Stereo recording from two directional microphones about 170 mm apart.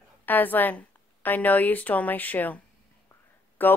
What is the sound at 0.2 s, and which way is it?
A woman's voice, 10° left (ahead or behind).